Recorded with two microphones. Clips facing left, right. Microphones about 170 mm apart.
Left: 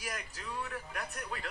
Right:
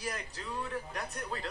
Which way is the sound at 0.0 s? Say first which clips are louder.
Right 3 dB; 30° right (ahead or behind).